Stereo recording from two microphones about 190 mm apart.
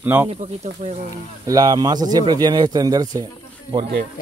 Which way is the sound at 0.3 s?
40° right (ahead or behind).